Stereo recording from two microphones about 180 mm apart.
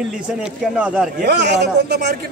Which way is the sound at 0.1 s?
5° right (ahead or behind).